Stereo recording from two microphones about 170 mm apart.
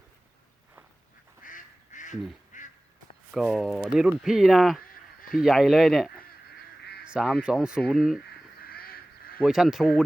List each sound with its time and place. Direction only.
1.5 s goose: 50° left (ahead or behind)
2.5 s duck: 50° left (ahead or behind)
3.3 s speech: centre (ahead or behind)
8.6 s honk: 60° left (ahead or behind)
9.4 s speech: 5° right (ahead or behind)